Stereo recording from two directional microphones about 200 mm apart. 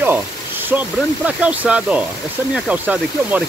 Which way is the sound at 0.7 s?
5° right (ahead or behind).